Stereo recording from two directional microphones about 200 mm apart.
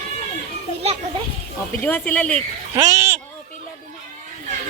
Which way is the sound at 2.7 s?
20° right (ahead or behind).